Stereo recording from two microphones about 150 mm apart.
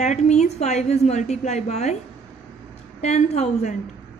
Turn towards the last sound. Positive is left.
turn(degrees=50)  # may be behind; listen again after turning